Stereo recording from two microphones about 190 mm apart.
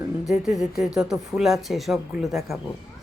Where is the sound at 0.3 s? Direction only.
Centre (ahead or behind).